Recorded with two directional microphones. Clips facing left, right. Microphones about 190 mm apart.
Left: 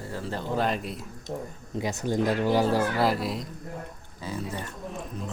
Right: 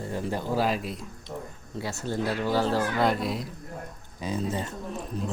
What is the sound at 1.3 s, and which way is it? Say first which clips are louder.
Speech: left 3 dB; 45° left (ahead or behind).